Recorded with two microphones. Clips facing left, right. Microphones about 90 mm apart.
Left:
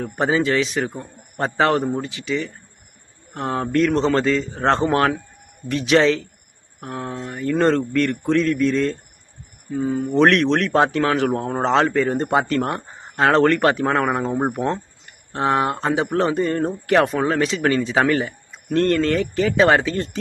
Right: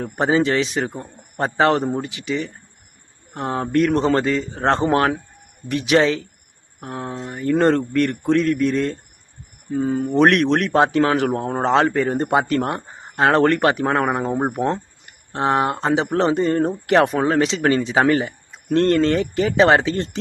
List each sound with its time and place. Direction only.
0.0 s a man's voice: 25° right (ahead or behind)
5.6 s a man's voice: 15° right (ahead or behind)
9.7 s speech: 30° right (ahead or behind)
10.0 s a man's voice: 20° right (ahead or behind)
14.2 s speech: 15° right (ahead or behind)
15.3 s a man's voice: 25° right (ahead or behind)